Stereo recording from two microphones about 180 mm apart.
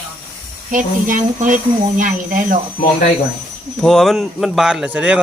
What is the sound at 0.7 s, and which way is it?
Speech, 45° right (ahead or behind).